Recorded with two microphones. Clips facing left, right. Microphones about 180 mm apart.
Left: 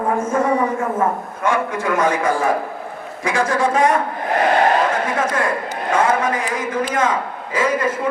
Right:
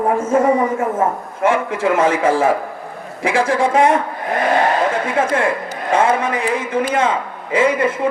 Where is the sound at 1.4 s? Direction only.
25° right (ahead or behind).